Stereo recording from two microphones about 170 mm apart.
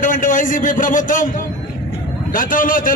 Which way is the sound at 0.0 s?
50° left (ahead or behind).